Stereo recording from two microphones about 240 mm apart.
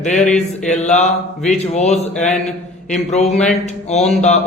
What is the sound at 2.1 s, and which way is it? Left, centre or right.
Speech, centre.